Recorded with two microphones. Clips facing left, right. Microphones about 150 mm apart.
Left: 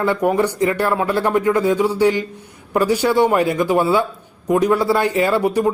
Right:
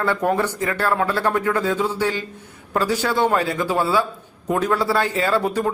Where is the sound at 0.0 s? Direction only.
15° left (ahead or behind).